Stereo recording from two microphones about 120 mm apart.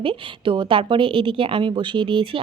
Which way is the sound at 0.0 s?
45° right (ahead or behind).